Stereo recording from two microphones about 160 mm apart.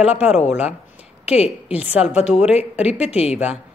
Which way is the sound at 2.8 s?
40° left (ahead or behind).